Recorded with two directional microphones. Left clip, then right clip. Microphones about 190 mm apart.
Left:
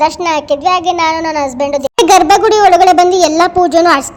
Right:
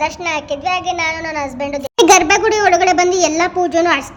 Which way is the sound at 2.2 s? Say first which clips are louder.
Left 6 dB; 25° left (ahead or behind).